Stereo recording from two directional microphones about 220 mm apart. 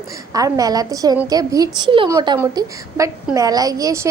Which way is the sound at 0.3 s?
15° right (ahead or behind).